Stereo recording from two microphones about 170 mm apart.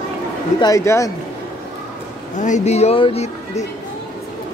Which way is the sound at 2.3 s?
45° left (ahead or behind).